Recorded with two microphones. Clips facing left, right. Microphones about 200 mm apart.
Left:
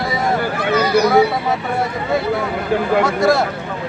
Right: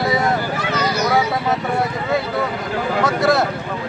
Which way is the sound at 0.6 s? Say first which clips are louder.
Left 6 dB; 55° left (ahead or behind).